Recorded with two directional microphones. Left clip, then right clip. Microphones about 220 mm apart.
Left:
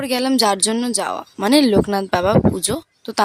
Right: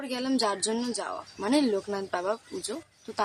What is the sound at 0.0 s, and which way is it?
Speech, 45° left (ahead or behind).